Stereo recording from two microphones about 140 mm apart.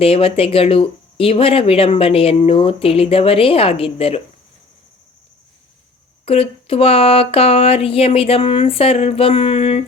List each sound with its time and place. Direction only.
0.0 s speech: 45° left (ahead or behind)
6.2 s speech: 45° left (ahead or behind)